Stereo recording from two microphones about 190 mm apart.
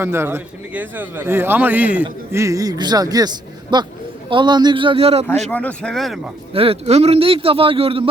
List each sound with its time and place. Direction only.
0.0 s a man's voice: 10° right (ahead or behind); by 5.2 s 30° right (ahead or behind)
5.5 s speech: 10° left (ahead or behind)
6.5 s a man's voice: 30° right (ahead or behind)